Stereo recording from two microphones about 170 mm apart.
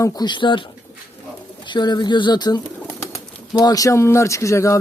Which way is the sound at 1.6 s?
25° left (ahead or behind).